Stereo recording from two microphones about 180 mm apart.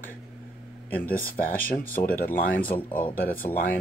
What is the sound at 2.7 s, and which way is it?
Speech, 10° left (ahead or behind).